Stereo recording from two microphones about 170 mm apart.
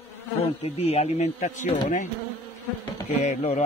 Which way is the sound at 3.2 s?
40° left (ahead or behind).